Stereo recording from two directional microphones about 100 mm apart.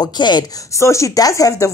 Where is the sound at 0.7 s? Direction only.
30° left (ahead or behind).